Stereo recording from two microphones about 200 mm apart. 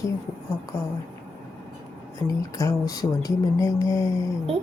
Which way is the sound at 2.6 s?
15° left (ahead or behind).